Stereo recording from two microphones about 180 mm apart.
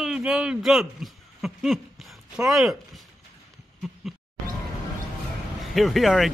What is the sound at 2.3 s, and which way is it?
Speech, 5° right (ahead or behind).